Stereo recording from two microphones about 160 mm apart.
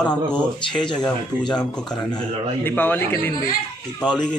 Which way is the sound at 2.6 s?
10° left (ahead or behind).